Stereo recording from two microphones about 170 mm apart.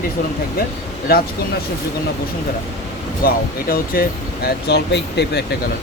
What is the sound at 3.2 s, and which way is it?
Speech, 55° left (ahead or behind).